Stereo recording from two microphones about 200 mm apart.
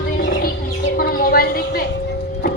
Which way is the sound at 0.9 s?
45° left (ahead or behind).